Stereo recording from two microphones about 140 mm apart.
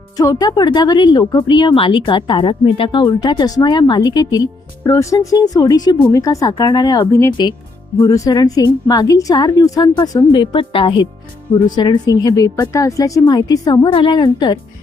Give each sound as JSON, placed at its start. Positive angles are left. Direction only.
{"t": 0.2, "sound": "a woman's voice", "side_deg": 25}